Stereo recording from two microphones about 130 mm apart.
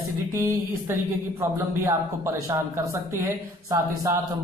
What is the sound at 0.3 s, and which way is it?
Speech, 20° right (ahead or behind).